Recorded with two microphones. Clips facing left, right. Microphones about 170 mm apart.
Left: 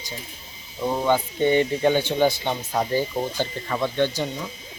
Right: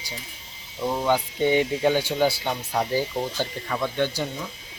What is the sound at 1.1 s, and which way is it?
Speech, 10° right (ahead or behind).